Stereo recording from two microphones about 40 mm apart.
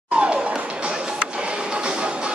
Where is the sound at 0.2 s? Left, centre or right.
Right.